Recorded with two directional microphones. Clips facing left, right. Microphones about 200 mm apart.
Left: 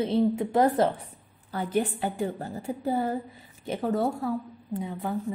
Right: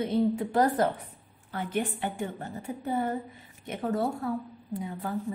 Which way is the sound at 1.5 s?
40° left (ahead or behind).